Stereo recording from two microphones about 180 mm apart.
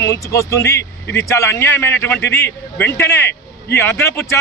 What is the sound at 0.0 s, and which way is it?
A man's voice, 15° left (ahead or behind).